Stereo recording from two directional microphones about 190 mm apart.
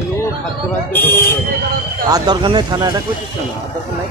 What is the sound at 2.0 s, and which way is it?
Speech, 20° right (ahead or behind).